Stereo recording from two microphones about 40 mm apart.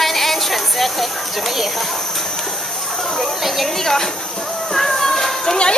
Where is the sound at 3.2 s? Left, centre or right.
Centre.